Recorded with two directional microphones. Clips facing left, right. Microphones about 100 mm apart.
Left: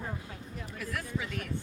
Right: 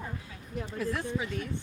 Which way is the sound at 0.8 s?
25° right (ahead or behind).